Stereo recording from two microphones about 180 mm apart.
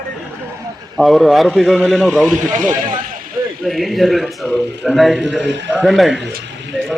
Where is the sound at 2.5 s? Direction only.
45° right (ahead or behind).